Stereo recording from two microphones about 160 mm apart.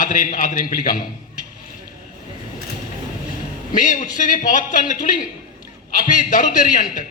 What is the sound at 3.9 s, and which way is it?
A man's voice, 55° left (ahead or behind).